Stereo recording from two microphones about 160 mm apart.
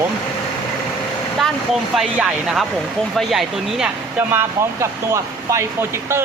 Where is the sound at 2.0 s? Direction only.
5° right (ahead or behind).